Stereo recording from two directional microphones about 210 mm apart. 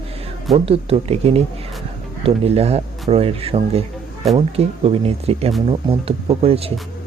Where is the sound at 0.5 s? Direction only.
25° right (ahead or behind).